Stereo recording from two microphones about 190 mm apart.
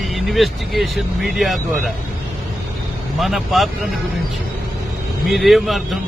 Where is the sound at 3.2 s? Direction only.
Centre (ahead or behind).